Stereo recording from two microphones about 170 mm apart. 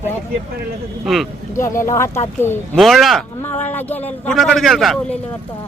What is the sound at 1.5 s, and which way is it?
Speech, 15° left (ahead or behind).